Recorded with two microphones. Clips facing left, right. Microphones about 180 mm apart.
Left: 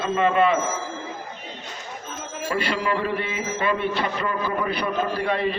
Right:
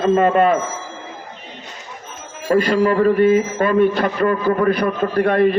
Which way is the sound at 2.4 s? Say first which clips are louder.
Right 10 dB; 45° right (ahead or behind).